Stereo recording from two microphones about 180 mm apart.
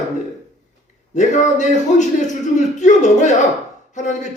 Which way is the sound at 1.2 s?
40° left (ahead or behind).